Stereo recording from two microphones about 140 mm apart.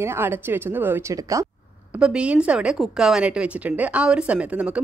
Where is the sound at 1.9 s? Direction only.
5° right (ahead or behind).